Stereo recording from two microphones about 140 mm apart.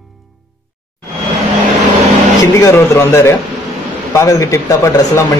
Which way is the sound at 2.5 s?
20° left (ahead or behind).